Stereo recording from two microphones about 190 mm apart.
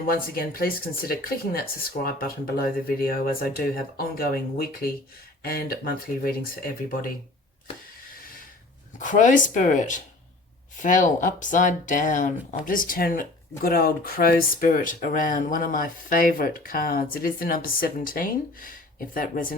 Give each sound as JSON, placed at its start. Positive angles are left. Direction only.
{"t": 0.1, "sound": "speech", "side_deg": 50}
{"t": 9.0, "sound": "speech", "side_deg": 40}